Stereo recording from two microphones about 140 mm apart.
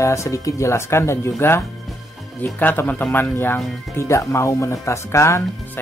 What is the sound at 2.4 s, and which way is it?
Speech, 15° left (ahead or behind).